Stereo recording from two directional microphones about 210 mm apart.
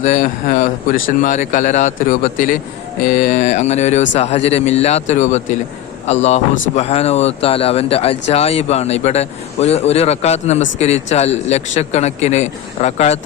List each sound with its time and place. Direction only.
0.0 s speech: 35° left (ahead or behind)